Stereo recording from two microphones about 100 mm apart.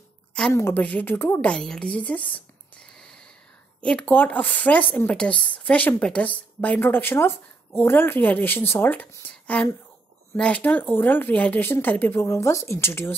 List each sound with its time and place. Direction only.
0.5 s speech: 20° left (ahead or behind)
1.5 s a sound: 5° left (ahead or behind)
3.8 s a woman's voice: 15° left (ahead or behind)